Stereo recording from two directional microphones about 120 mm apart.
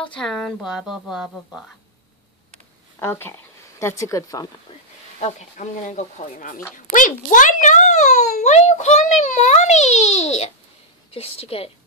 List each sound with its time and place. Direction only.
0.0 s speech: 5° left (ahead or behind)
0.6 s a sound: centre (ahead or behind)
3.0 s speech: 20° left (ahead or behind)
5.2 s a child's voice: 85° left; by 10.5 s 65° left (ahead or behind)
11.1 s a woman's voice: 55° left (ahead or behind)